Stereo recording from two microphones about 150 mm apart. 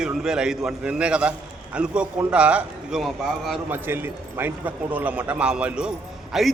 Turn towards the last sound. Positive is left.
turn(degrees=0)  # may be behind; listen again after turning